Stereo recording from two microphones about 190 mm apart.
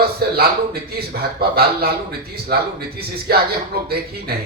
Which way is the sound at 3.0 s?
55° right (ahead or behind).